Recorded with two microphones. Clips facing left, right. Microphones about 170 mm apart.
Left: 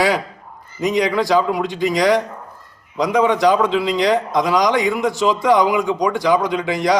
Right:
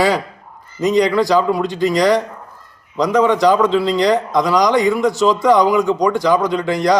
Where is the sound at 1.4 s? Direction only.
15° left (ahead or behind).